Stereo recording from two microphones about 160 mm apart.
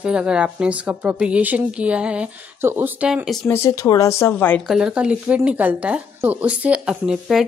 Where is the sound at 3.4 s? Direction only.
15° left (ahead or behind).